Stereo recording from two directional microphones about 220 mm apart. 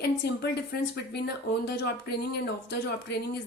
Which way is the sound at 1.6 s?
50° left (ahead or behind).